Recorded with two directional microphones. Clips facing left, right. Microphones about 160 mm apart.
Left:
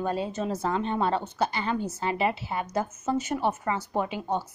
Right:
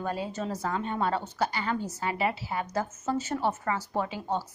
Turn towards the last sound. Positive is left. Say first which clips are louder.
# left 2 dB
turn(degrees=20)  # may be behind; listen again after turning